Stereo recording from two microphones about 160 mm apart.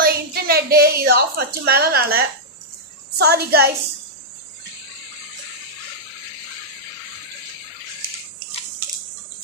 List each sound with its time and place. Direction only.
0.0 s a woman's voice: 70° right (ahead or behind)
3.2 s a woman's voice: 85° right